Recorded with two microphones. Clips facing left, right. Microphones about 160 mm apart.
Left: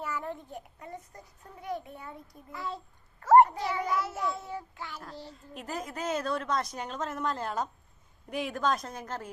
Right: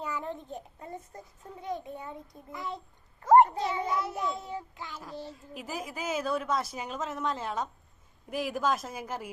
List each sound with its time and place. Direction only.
0.0 s a child's voice: 20° right (ahead or behind)
5.5 s a woman's voice: 5° right (ahead or behind)